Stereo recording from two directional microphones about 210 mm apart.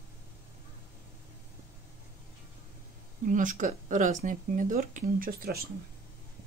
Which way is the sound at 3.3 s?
40° right (ahead or behind).